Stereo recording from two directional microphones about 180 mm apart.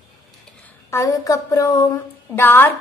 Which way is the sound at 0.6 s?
15° left (ahead or behind).